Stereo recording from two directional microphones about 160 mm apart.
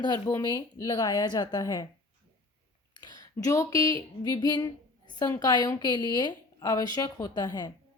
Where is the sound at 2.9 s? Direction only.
25° left (ahead or behind).